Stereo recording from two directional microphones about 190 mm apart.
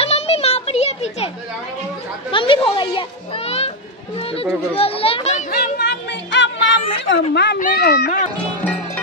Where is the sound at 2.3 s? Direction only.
25° left (ahead or behind).